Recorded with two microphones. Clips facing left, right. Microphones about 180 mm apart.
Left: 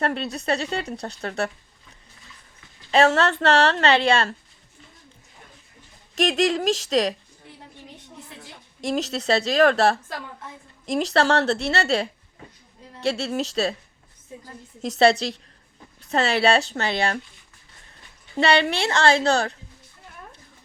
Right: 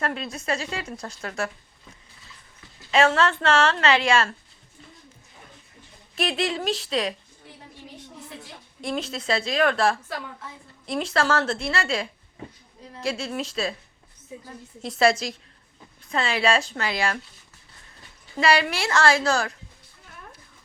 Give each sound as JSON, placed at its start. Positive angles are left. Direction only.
{"t": 0.0, "sound": "speech", "side_deg": 35}
{"t": 2.9, "sound": "speech", "side_deg": 35}
{"t": 6.1, "sound": "speech", "side_deg": 45}
{"t": 8.8, "sound": "speech", "side_deg": 40}
{"t": 13.1, "sound": "speech", "side_deg": 35}
{"t": 14.8, "sound": "speech", "side_deg": 40}
{"t": 16.1, "sound": "speech", "side_deg": 40}
{"t": 18.3, "sound": "speech", "side_deg": 30}